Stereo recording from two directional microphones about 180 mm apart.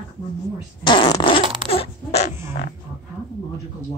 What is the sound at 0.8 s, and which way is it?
Speech, 25° left (ahead or behind).